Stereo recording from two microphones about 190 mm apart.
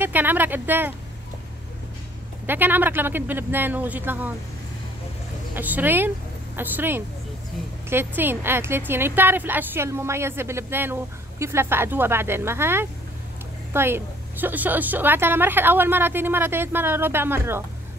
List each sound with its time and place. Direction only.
0.0 s a woman's voice: 10° right (ahead or behind)
2.4 s a woman's voice: 10° right (ahead or behind)
5.5 s speech: 10° right (ahead or behind)
8.2 s a woman's voice: 10° right (ahead or behind)